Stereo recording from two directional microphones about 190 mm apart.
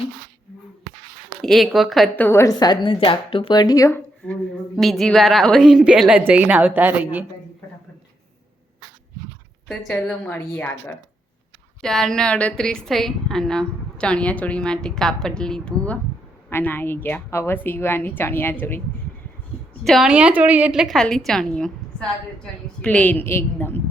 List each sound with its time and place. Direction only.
1.4 s a woman's voice: centre (ahead or behind)
4.8 s a woman's voice: centre (ahead or behind)
9.6 s a woman's voice: 5° left (ahead or behind)
19.8 s a woman's voice: centre (ahead or behind)